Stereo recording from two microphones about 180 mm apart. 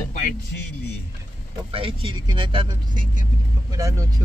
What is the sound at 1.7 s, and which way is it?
Speech, 30° right (ahead or behind).